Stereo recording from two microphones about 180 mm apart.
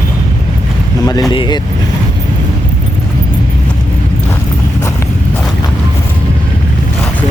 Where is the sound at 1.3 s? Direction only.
30° left (ahead or behind).